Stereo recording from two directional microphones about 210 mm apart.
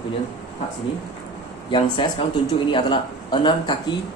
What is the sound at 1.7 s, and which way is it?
Speech, 20° left (ahead or behind).